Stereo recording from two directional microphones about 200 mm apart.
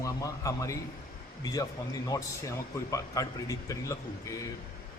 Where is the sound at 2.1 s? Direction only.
20° left (ahead or behind).